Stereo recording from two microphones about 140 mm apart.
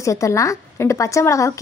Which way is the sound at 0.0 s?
20° left (ahead or behind).